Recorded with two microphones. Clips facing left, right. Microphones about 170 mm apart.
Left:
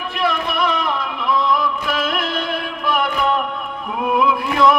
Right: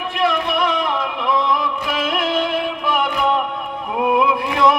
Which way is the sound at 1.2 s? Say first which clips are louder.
Left 1 dB; 20° right (ahead or behind).